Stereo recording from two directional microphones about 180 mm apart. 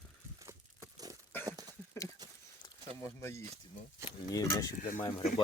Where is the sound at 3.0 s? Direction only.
15° left (ahead or behind).